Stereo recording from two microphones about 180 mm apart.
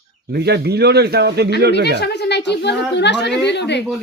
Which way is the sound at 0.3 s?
65° right (ahead or behind).